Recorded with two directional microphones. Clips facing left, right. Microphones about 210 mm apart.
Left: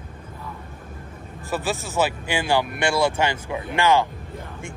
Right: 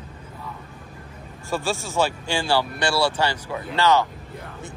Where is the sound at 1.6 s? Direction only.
15° left (ahead or behind).